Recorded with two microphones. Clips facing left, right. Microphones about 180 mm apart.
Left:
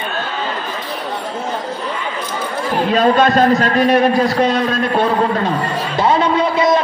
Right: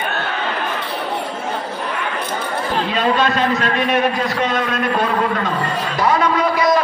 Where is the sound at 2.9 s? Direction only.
45° left (ahead or behind).